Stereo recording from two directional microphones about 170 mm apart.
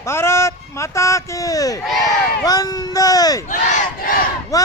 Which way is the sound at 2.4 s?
20° left (ahead or behind).